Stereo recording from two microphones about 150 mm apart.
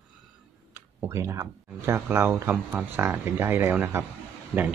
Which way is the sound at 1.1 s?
20° right (ahead or behind).